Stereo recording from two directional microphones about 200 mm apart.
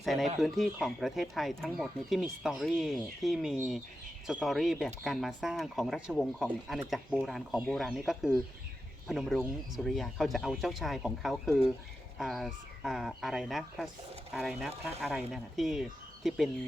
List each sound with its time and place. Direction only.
0.0 s speech: centre (ahead or behind)